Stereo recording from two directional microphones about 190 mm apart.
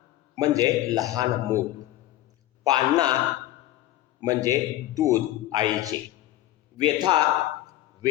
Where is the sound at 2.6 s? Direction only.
20° right (ahead or behind).